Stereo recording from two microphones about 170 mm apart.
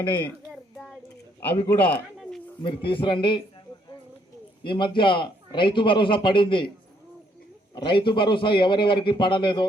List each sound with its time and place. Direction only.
1.4 s a man's voice: 10° left (ahead or behind)
2.6 s a man's voice: 30° left (ahead or behind)
4.6 s a man's voice: 30° left (ahead or behind)
7.8 s a man's voice: 30° left (ahead or behind)